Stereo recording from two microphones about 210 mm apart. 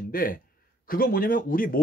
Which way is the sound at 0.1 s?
40° left (ahead or behind).